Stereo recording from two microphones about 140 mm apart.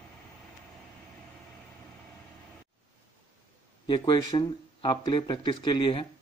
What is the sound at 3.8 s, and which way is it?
Speech, 35° left (ahead or behind).